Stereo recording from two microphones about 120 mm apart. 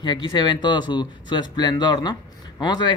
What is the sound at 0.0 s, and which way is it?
Speech, 40° left (ahead or behind).